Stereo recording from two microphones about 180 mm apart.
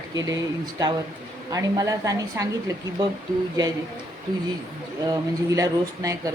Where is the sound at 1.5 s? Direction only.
20° right (ahead or behind).